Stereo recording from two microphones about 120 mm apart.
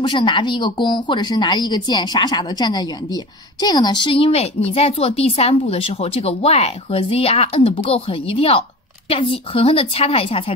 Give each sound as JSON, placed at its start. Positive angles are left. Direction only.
{"t": 0.0, "sound": "a woman's voice", "side_deg": 40}